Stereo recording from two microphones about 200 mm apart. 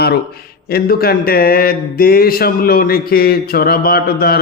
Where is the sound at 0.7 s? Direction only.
50° left (ahead or behind).